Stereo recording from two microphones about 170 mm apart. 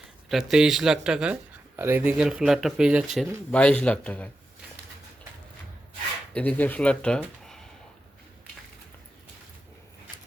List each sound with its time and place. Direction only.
0.3 s speech: centre (ahead or behind)
6.3 s speech: 10° left (ahead or behind)